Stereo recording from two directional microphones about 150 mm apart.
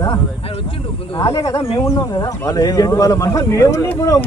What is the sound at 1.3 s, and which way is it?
Speech, 20° left (ahead or behind).